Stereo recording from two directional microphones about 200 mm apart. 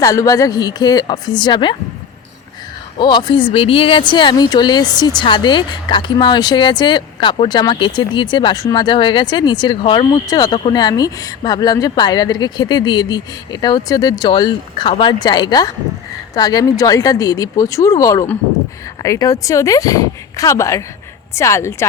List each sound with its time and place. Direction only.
0.0 s speech: 15° left (ahead or behind)
3.0 s speech: 20° left (ahead or behind)